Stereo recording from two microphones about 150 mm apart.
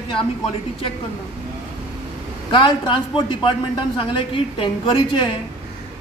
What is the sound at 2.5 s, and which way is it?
Speech, 35° left (ahead or behind).